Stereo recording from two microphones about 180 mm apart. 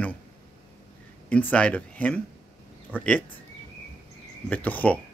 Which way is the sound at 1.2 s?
5° left (ahead or behind).